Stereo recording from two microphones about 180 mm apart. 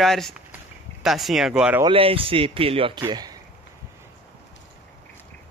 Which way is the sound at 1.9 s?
30° right (ahead or behind).